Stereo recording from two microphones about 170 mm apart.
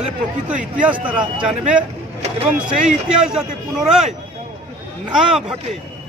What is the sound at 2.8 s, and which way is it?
Speech, 5° right (ahead or behind).